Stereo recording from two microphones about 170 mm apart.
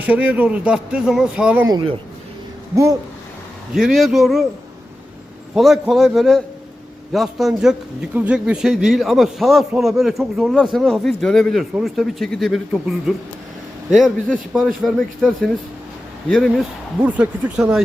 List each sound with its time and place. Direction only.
0.0 s speech: 10° right (ahead or behind)
1.6 s speech: 25° right (ahead or behind)
2.7 s speech: 15° right (ahead or behind)
3.8 s a man's voice: centre (ahead or behind)
5.5 s a man's voice: centre (ahead or behind)